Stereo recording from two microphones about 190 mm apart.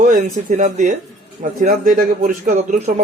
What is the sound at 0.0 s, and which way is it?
A man's voice, 40° right (ahead or behind).